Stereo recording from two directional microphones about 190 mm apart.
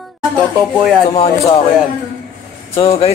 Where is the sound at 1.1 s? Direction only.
30° left (ahead or behind).